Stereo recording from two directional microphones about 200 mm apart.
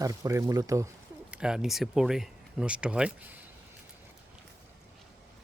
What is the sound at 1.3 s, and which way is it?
Speech, 5° right (ahead or behind).